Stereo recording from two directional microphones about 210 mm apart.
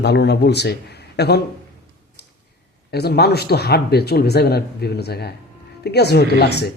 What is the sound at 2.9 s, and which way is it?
A man's voice, 50° left (ahead or behind).